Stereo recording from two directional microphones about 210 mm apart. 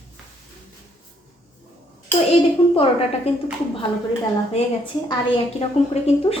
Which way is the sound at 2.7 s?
25° left (ahead or behind).